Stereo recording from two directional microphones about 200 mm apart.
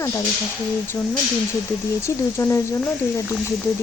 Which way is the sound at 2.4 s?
15° left (ahead or behind).